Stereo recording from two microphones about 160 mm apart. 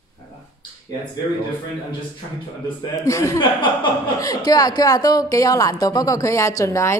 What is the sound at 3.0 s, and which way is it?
A woman's voice, 20° left (ahead or behind).